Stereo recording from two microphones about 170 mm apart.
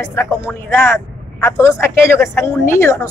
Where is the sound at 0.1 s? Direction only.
15° left (ahead or behind).